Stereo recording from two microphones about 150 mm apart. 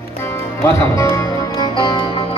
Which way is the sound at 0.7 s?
20° left (ahead or behind).